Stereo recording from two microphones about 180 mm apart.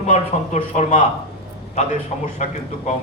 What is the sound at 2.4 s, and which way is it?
Speech, 40° left (ahead or behind).